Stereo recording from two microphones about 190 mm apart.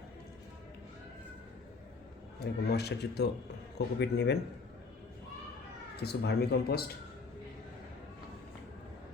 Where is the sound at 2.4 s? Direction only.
60° left (ahead or behind).